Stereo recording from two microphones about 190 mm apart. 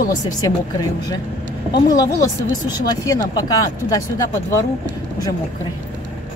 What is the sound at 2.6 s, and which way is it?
Speech, 20° left (ahead or behind).